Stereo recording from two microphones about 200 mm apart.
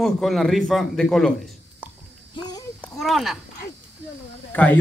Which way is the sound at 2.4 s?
25° left (ahead or behind).